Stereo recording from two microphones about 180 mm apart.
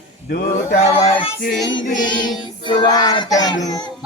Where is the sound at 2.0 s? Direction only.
25° left (ahead or behind).